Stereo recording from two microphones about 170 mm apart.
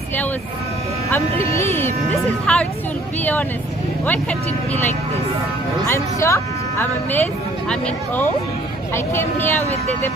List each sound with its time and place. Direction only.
1.1 s speech: 15° left (ahead or behind)
4.0 s speech: 10° left (ahead or behind)
5.9 s speech: 15° left (ahead or behind)
8.9 s speech: 15° left (ahead or behind)